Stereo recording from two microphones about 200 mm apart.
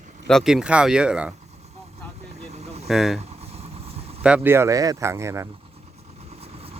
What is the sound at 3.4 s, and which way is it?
Vehicle, 30° right (ahead or behind).